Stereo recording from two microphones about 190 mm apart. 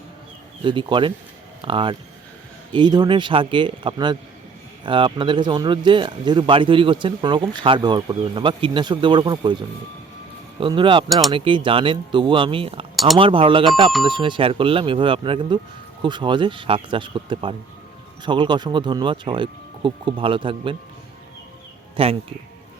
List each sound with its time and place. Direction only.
0.6 s speech: 25° right (ahead or behind)
21.9 s speech: 30° right (ahead or behind)